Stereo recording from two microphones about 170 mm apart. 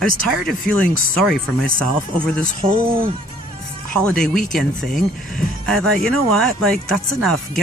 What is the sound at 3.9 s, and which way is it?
Speech, 5° left (ahead or behind).